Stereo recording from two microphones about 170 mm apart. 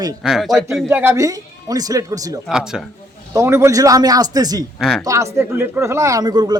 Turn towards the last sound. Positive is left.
turn(degrees=-25)  # may be behind; listen again after turning